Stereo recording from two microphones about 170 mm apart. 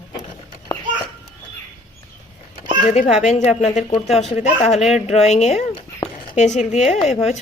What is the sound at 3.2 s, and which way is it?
Speech, 45° left (ahead or behind).